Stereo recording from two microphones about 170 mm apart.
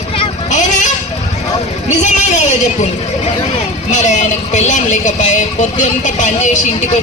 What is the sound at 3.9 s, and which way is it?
Speech, 45° left (ahead or behind).